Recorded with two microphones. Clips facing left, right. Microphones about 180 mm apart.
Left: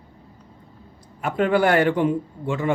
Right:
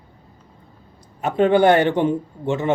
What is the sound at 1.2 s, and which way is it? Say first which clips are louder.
A man's voice: right 4 dB; 20° right (ahead or behind).